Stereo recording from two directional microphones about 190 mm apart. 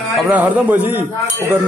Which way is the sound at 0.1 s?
5° right (ahead or behind).